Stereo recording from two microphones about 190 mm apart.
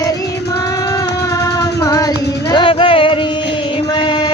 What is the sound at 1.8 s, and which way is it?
Child singing, 20° left (ahead or behind).